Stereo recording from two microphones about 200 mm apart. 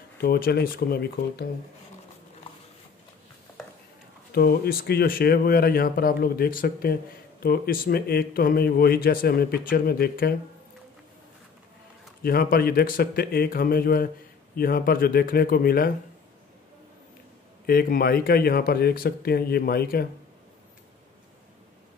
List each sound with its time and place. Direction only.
0.2 s speech: 50° left (ahead or behind)
4.3 s speech: 50° left (ahead or behind)
12.2 s speech: 50° left (ahead or behind)
17.6 s speech: 45° left (ahead or behind)